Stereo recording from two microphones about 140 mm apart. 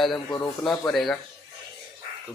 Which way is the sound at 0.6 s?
5° left (ahead or behind).